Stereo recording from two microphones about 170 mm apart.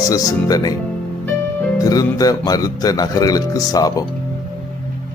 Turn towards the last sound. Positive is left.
turn(degrees=20)  # may be behind; listen again after turning